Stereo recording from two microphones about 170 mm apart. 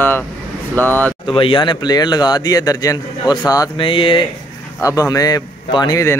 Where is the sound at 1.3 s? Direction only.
30° left (ahead or behind).